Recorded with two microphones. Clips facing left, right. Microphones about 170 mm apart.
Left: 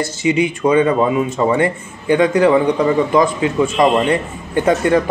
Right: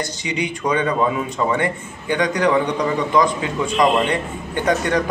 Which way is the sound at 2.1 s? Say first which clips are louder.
Left 5 dB; 25° left (ahead or behind).